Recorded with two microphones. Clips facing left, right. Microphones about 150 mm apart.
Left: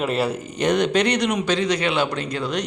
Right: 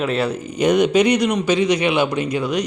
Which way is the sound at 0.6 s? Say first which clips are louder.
Right 4 dB; 5° right (ahead or behind).